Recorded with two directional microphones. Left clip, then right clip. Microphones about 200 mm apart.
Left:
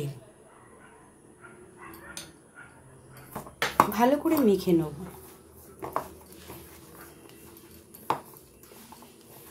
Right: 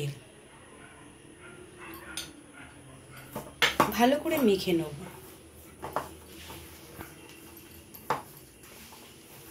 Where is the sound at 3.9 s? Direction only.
50° left (ahead or behind).